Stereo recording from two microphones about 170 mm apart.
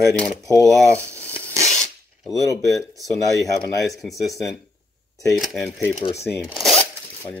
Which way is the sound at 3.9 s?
Centre (ahead or behind).